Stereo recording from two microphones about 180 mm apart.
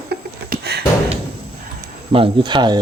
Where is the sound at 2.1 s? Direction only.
30° right (ahead or behind).